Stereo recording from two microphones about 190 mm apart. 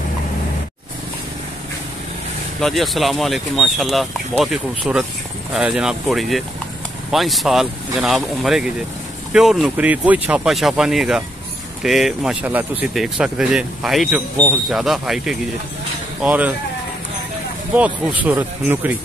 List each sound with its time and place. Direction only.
2.6 s speech: centre (ahead or behind)
17.7 s speech: 10° right (ahead or behind)